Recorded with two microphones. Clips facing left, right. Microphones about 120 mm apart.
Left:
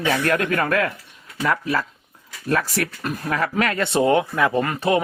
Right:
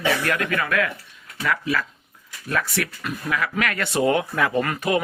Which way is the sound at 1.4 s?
35° left (ahead or behind).